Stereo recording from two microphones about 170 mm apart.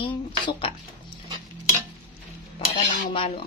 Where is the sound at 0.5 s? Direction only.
30° left (ahead or behind).